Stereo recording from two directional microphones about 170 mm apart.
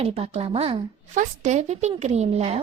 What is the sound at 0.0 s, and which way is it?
A woman's voice, 35° right (ahead or behind).